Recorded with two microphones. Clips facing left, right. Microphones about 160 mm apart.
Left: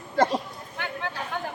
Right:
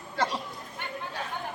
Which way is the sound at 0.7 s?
90° left.